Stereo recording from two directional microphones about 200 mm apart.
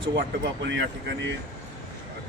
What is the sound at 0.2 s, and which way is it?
Speech, 60° right (ahead or behind).